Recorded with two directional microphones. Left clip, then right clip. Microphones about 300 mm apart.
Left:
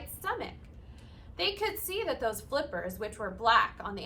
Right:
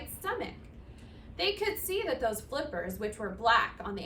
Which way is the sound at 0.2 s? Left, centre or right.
Centre.